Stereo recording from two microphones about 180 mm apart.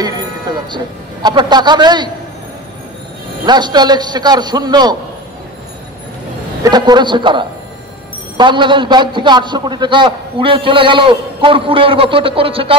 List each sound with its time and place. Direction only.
0.0 s a sound: 25° right (ahead or behind)
1.2 s a man's voice: 25° right (ahead or behind)
3.4 s a man's voice: 25° right (ahead or behind)
6.6 s a man's voice: 25° right (ahead or behind)